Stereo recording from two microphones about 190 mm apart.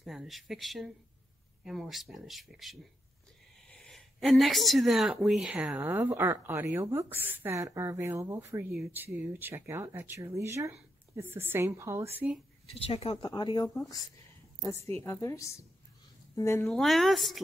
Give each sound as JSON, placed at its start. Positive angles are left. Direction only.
{"t": 0.0, "sound": "a woman's voice", "side_deg": 0}
{"t": 12.7, "sound": "speech", "side_deg": 30}
{"t": 15.0, "sound": "a woman's voice", "side_deg": 15}
{"t": 16.6, "sound": "speech", "side_deg": 0}